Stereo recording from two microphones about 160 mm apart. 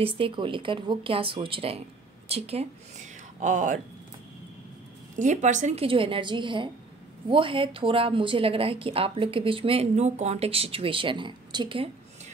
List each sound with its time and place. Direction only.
0.0 s speech: 35° right (ahead or behind); by 3.8 s 55° right (ahead or behind)
5.1 s speech: 50° right (ahead or behind); by 11.9 s 30° right (ahead or behind)